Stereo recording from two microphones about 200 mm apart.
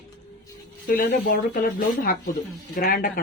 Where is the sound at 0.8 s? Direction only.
45° left (ahead or behind).